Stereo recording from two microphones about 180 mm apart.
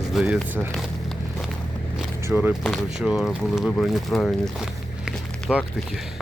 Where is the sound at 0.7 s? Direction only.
Centre (ahead or behind).